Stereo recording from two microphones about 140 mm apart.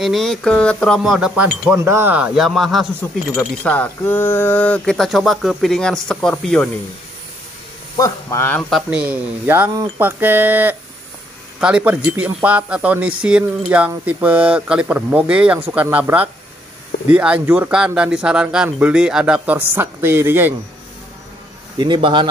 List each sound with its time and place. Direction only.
0.0 s speech: centre (ahead or behind)
1.8 s speech: 20° right (ahead or behind); by 2.9 s centre (ahead or behind)
3.0 s speech: 10° left (ahead or behind)
8.0 s speech: 20° left (ahead or behind)
8.6 s speech: 5° right (ahead or behind)
21.7 s a man's voice: 35° right (ahead or behind)